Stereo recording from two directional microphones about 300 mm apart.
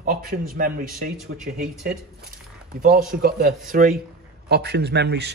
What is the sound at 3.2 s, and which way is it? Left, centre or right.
A man's voice, right.